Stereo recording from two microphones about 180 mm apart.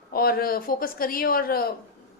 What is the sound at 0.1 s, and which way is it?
A woman's voice, 55° left (ahead or behind).